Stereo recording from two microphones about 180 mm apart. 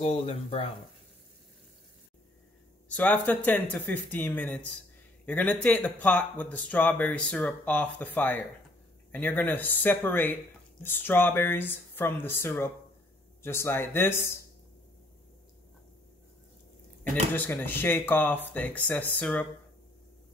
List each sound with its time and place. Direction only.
0.0 s speech: 35° left (ahead or behind)
2.9 s speech: 10° left (ahead or behind)
17.1 s speech: 10° left (ahead or behind)